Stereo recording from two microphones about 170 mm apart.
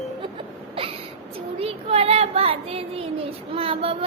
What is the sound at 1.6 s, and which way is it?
Child singing, 35° right (ahead or behind).